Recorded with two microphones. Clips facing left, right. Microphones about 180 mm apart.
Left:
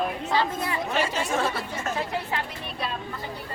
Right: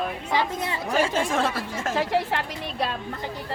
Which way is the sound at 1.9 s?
90° right.